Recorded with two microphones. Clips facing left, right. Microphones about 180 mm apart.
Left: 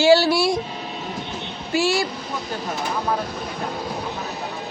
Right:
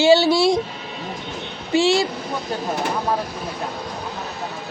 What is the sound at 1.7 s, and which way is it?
Speech, 20° right (ahead or behind).